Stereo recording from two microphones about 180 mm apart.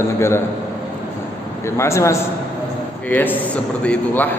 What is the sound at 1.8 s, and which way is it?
Speech, 15° left (ahead or behind).